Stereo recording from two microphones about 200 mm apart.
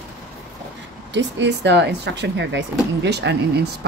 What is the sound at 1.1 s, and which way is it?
A woman's voice, 60° right (ahead or behind).